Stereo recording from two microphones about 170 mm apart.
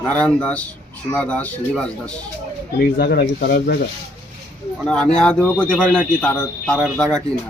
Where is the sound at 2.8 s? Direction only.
65° left (ahead or behind).